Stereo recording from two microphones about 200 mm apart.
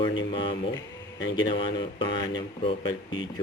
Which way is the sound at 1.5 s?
25° left (ahead or behind).